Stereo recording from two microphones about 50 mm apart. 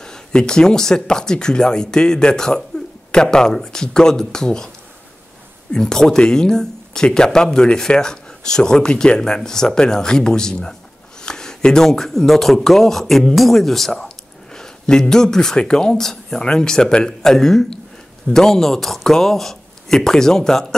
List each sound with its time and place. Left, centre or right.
0.0 s speech: centre
5.7 s speech: centre